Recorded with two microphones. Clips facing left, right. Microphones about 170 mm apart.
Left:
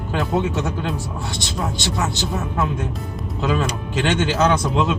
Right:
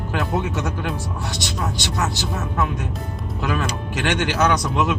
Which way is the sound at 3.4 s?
25° left (ahead or behind).